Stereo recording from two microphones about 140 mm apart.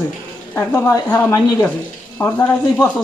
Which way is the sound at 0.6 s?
15° left (ahead or behind).